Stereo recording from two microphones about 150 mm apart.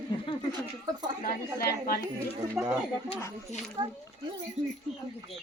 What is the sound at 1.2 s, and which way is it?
Speech, 90° left.